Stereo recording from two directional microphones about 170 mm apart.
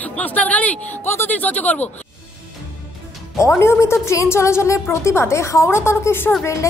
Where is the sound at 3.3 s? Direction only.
15° left (ahead or behind).